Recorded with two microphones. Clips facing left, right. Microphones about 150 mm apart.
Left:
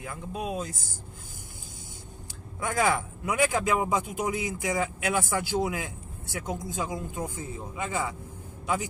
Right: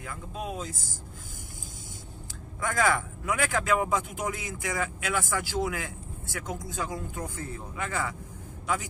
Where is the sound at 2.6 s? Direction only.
20° left (ahead or behind).